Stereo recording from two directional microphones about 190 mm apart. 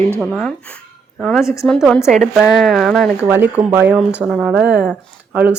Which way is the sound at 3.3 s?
10° right (ahead or behind).